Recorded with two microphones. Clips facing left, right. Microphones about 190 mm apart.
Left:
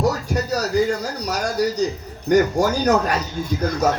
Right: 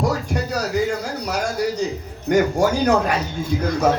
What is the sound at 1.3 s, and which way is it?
Speech, 35° left (ahead or behind).